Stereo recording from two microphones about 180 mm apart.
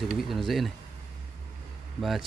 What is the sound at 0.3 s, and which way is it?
Speech, centre (ahead or behind).